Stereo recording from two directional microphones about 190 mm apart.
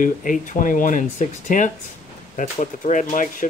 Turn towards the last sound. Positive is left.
turn(degrees=40)  # may be behind; listen again after turning